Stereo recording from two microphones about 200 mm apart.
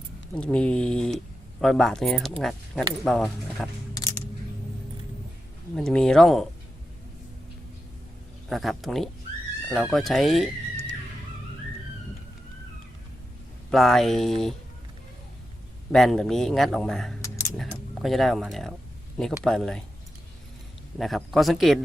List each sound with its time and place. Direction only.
0.3 s speech: 5° left (ahead or behind)
5.7 s speech: 5° left (ahead or behind)
8.4 s speech: centre (ahead or behind)
13.7 s speech: centre (ahead or behind)
15.9 s speech: centre (ahead or behind)
17.2 s a sound: 15° left (ahead or behind)
17.6 s speech: centre (ahead or behind)
21.0 s speech: centre (ahead or behind)